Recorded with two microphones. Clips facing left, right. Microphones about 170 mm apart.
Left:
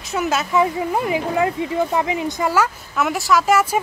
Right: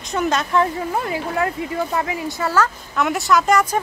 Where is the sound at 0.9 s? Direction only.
20° left (ahead or behind).